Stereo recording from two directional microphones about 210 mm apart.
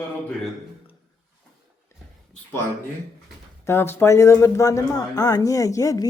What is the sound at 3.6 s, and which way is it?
Speech, 10° left (ahead or behind).